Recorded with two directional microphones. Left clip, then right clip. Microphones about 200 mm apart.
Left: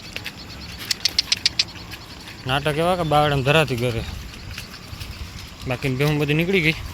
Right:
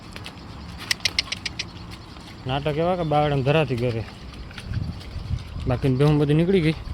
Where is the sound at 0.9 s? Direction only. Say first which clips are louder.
Left 3 dB; 5° right (ahead or behind).